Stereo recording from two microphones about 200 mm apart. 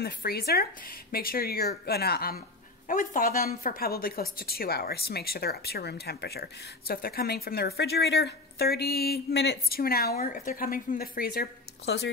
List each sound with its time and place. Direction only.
0.0 s a woman's voice: 50° left (ahead or behind)